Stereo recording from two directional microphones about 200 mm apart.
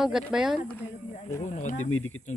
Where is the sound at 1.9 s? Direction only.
90° left.